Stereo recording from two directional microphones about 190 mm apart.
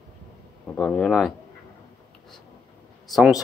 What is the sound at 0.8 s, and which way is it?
Speech, centre (ahead or behind).